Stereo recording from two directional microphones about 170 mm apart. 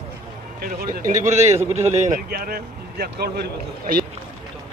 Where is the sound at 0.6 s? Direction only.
60° right (ahead or behind).